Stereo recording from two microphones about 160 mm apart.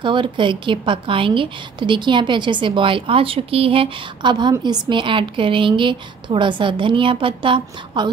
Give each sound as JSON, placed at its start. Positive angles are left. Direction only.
{"t": 0.0, "sound": "a woman's voice", "side_deg": -30}